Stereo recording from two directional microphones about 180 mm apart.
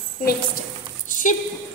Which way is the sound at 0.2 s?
55° left (ahead or behind).